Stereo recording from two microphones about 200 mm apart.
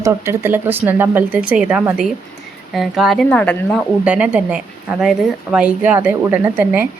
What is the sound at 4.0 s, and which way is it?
A woman's voice, 5° right (ahead or behind).